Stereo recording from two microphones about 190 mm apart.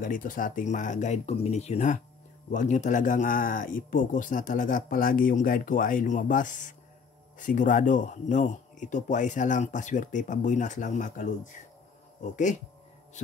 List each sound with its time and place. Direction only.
0.0 s speech: 45° left (ahead or behind)